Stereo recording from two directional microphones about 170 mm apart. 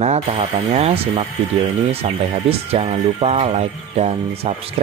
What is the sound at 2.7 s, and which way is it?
Speech, 35° right (ahead or behind).